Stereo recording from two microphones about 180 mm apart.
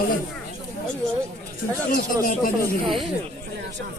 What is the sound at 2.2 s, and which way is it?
Speech, 50° left (ahead or behind).